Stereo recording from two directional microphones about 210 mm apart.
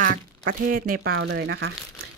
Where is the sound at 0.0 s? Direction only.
40° right (ahead or behind).